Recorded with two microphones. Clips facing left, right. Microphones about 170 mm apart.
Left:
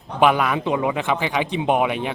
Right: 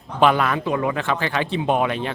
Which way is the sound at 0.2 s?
10° left (ahead or behind).